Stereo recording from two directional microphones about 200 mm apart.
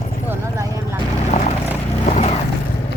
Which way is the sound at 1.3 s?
30° left (ahead or behind).